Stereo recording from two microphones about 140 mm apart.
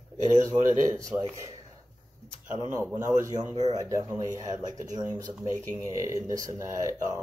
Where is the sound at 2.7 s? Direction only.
20° right (ahead or behind).